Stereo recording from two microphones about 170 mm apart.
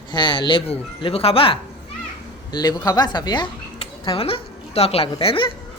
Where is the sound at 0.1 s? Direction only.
30° left (ahead or behind).